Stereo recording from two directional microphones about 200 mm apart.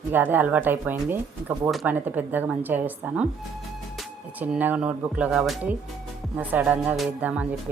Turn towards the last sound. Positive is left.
turn(degrees=-5)  # may be behind; listen again after turning